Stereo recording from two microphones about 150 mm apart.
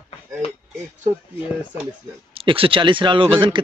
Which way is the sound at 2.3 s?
35° right (ahead or behind).